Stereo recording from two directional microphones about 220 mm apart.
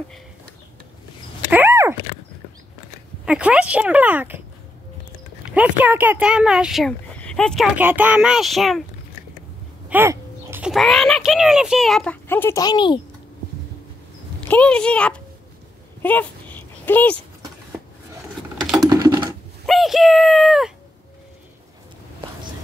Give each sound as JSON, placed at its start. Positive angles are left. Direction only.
{"t": 1.5, "sound": "a sound", "side_deg": -10}
{"t": 3.3, "sound": "speech", "side_deg": -5}
{"t": 5.5, "sound": "speech", "side_deg": -5}
{"t": 9.8, "sound": "speech", "side_deg": -10}
{"t": 14.5, "sound": "speech", "side_deg": 5}
{"t": 16.0, "sound": "a sound", "side_deg": 10}
{"t": 18.9, "sound": "typing", "side_deg": -15}
{"t": 19.6, "sound": "speech", "side_deg": 0}